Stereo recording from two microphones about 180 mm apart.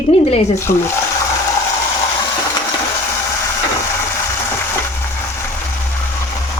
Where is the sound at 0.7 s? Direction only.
55° left (ahead or behind).